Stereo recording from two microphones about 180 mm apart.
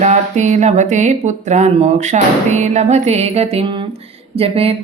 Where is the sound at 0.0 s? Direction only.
40° right (ahead or behind).